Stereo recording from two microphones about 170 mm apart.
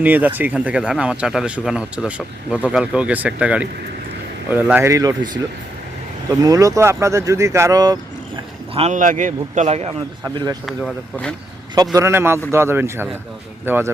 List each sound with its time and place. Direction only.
0.0 s speech: 10° right (ahead or behind)
6.4 s speech: 20° right (ahead or behind)
8.7 s speech: 35° right (ahead or behind)
9.0 s speech: 50° right (ahead or behind)
10.3 s speech: 25° right (ahead or behind)
10.7 s speech: 5° left (ahead or behind)
11.9 s speech: 15° right (ahead or behind)